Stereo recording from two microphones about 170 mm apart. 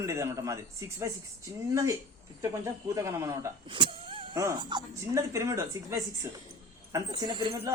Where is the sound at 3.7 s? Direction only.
30° right (ahead or behind).